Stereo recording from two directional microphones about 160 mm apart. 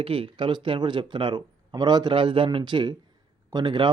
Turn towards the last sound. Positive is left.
turn(degrees=-30)  # may be behind; listen again after turning